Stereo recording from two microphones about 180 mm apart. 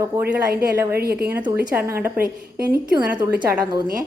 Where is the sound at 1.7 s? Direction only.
10° right (ahead or behind).